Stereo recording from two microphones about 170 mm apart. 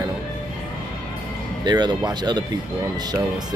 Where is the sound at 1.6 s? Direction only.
25° right (ahead or behind).